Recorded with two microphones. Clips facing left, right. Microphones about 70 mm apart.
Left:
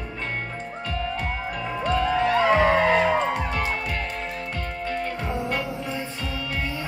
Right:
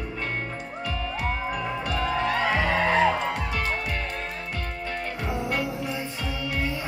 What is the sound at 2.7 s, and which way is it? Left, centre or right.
Music, left.